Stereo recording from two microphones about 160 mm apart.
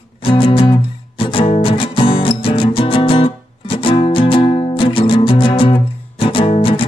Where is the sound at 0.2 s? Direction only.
35° left (ahead or behind).